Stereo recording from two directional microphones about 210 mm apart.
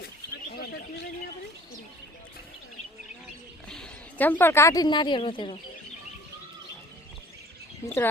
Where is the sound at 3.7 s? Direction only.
5° left (ahead or behind); by 5.6 s 25° left (ahead or behind).